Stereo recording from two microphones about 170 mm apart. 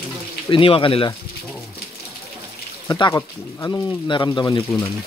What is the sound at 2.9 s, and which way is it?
Speech, 20° left (ahead or behind).